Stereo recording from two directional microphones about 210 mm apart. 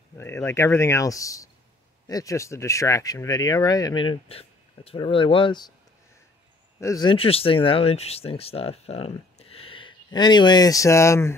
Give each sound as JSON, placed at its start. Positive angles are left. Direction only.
{"t": 0.2, "sound": "speech", "side_deg": 15}
{"t": 6.8, "sound": "speech", "side_deg": 15}